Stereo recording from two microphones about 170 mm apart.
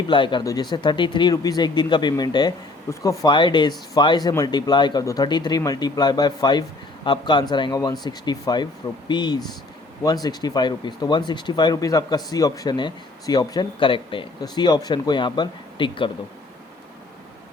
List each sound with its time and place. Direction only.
0.1 s speech: 30° left (ahead or behind)